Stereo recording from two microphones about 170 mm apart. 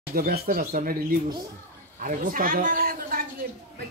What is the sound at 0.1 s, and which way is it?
Speech, 60° right (ahead or behind).